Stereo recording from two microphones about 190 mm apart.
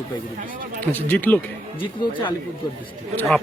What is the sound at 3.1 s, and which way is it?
Speech, 10° left (ahead or behind).